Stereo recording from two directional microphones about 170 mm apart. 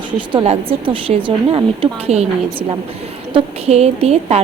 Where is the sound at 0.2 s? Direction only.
30° right (ahead or behind).